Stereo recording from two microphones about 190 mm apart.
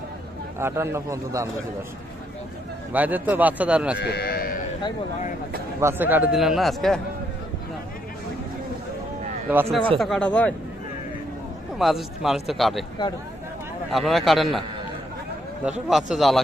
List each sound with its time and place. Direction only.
0.6 s speech: 15° right (ahead or behind)
2.9 s speech: 10° right (ahead or behind)
4.0 s sheep: 55° left (ahead or behind)
5.8 s speech: 10° right (ahead or behind)
9.5 s speech: 10° right (ahead or behind)
10.0 s speech: 5° left (ahead or behind)
11.8 s speech: centre (ahead or behind)
13.9 s speech: centre (ahead or behind)
15.9 s speech: centre (ahead or behind)